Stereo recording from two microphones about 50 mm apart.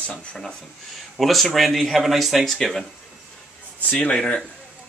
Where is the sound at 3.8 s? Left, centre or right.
Left.